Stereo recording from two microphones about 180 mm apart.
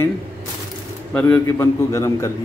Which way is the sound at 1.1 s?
5° left (ahead or behind).